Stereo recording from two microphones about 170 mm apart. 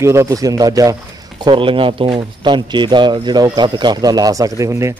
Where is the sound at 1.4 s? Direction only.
30° right (ahead or behind).